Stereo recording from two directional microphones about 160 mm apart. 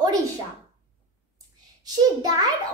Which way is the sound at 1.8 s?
25° right (ahead or behind).